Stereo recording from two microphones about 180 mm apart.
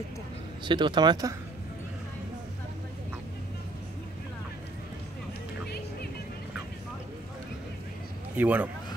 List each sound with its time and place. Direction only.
0.7 s speech: 25° right (ahead or behind)
8.4 s speech: 10° right (ahead or behind)